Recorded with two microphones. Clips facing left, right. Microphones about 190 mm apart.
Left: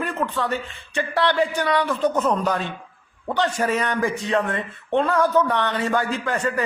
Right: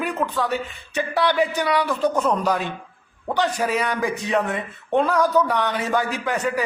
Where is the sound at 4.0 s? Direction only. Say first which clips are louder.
Even; 15° right (ahead or behind).